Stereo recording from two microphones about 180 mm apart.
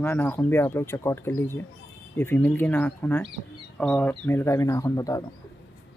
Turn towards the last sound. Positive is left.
turn(degrees=20)  # may be behind; listen again after turning